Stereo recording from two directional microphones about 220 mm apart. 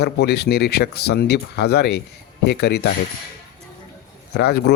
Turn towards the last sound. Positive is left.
turn(degrees=45)  # may be behind; listen again after turning